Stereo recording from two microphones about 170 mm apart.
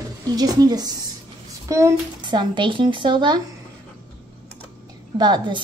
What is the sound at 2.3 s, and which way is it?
A woman's voice, 30° right (ahead or behind).